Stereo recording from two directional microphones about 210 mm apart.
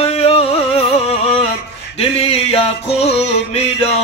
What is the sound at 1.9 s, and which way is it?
Music, 30° left (ahead or behind).